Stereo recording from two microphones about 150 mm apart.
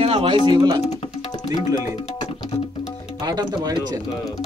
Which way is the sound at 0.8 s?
45° left (ahead or behind).